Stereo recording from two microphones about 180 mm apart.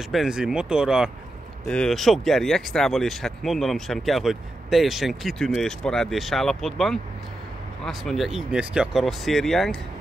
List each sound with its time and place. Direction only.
0.1 s speech: 5° right (ahead or behind)